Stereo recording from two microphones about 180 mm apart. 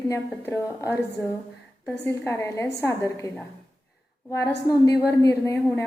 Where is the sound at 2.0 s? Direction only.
15° left (ahead or behind).